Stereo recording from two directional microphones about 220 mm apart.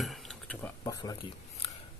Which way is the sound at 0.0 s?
Centre (ahead or behind).